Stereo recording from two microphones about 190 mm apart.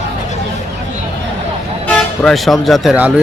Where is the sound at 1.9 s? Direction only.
5° left (ahead or behind).